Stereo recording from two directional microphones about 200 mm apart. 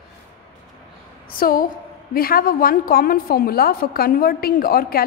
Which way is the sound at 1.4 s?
45° left (ahead or behind).